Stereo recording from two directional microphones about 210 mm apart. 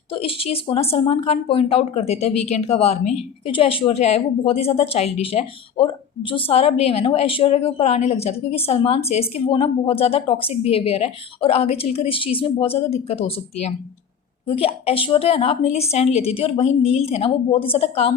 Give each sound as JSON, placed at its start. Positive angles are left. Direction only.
{"t": 0.1, "sound": "a woman's voice", "side_deg": 25}